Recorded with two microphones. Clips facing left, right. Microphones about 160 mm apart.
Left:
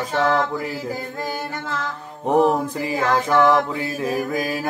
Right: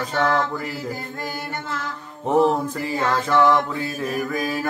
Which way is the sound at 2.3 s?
15° left (ahead or behind).